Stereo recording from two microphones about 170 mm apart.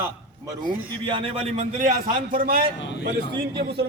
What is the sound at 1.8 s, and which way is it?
Speech, 50° right (ahead or behind).